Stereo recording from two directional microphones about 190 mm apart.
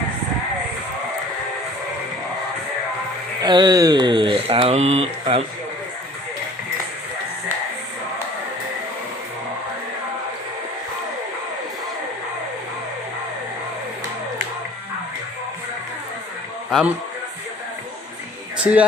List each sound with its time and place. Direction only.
3.4 s speech: 20° right (ahead or behind)
16.7 s speech: centre (ahead or behind)
18.5 s speech: 5° right (ahead or behind)